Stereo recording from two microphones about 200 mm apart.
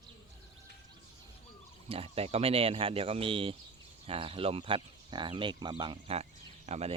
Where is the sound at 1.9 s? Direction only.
30° right (ahead or behind).